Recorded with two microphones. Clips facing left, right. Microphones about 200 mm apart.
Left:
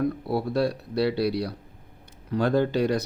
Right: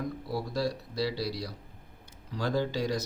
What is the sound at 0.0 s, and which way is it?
Speech, 60° left (ahead or behind).